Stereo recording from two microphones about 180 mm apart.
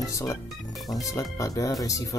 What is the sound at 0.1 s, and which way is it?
Speech, 15° left (ahead or behind).